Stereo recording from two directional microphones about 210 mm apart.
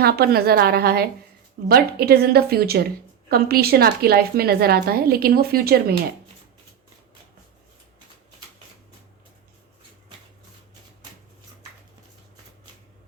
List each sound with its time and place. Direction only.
0.0 s a woman's voice: 45° right (ahead or behind)